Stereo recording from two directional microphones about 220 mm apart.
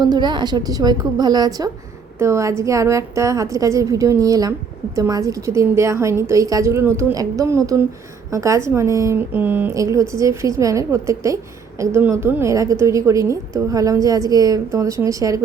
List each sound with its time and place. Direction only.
0.0 s a woman's voice: 20° right (ahead or behind)